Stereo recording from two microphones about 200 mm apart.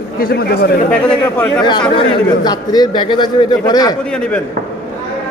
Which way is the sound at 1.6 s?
20° left (ahead or behind).